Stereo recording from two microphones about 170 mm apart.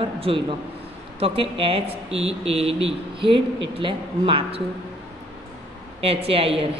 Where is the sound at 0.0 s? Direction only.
30° right (ahead or behind).